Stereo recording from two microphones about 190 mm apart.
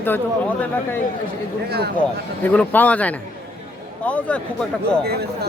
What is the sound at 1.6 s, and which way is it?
Speech, 55° right (ahead or behind).